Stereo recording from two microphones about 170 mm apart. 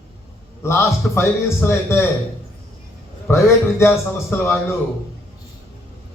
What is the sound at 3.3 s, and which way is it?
A man's voice, 10° left (ahead or behind).